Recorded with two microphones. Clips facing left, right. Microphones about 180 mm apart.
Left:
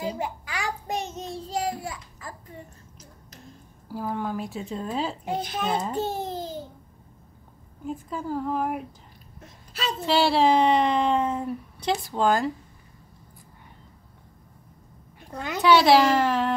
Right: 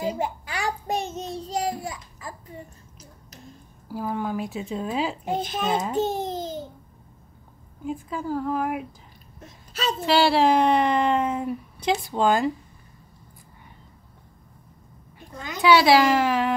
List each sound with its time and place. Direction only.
0.2 s a child's voice: 30° right (ahead or behind)
3.9 s speech: 10° right (ahead or behind)
5.3 s a child's voice: 25° right (ahead or behind)
7.8 s speech: 5° right (ahead or behind)
10.0 s speech: 5° right (ahead or behind)
15.3 s a woman's voice: 65° left (ahead or behind)
15.6 s speech: 10° right (ahead or behind)